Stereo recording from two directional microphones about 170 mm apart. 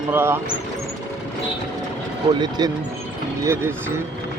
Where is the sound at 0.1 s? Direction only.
15° right (ahead or behind).